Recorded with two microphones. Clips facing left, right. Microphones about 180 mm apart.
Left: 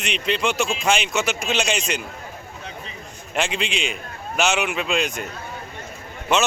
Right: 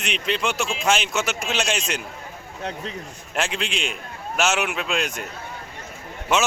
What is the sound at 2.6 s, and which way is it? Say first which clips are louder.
Speech: right 10 dB; 70° right (ahead or behind).